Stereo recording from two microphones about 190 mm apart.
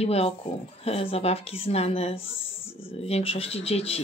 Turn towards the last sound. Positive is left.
turn(degrees=30)  # may be behind; listen again after turning